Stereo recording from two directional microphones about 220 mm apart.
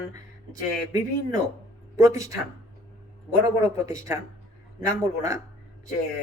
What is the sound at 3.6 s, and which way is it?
Speech, 15° right (ahead or behind).